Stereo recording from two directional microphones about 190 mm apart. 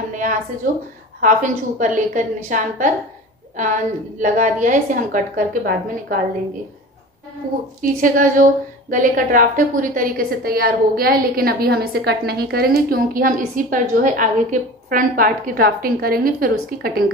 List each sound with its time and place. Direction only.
0.1 s a sound: 45° right (ahead or behind)
0.7 s a woman's voice: 45° right (ahead or behind)
7.4 s a woman's voice: 45° right (ahead or behind)